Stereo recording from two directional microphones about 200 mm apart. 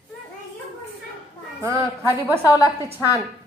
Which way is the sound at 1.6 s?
15° right (ahead or behind).